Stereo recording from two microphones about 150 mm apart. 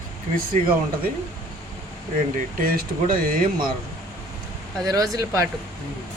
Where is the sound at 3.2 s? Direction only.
70° right (ahead or behind).